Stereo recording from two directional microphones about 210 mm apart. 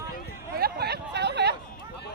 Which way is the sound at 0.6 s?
50° right (ahead or behind).